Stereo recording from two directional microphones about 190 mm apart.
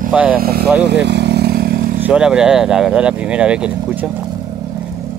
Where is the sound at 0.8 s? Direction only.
65° right (ahead or behind).